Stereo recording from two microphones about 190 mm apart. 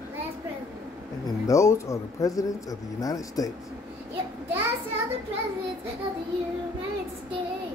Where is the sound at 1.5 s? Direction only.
15° left (ahead or behind).